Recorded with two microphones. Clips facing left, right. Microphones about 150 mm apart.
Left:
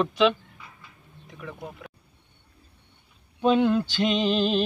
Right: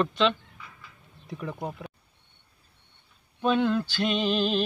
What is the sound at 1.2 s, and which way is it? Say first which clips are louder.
Speech: right 5 dB; 35° right (ahead or behind).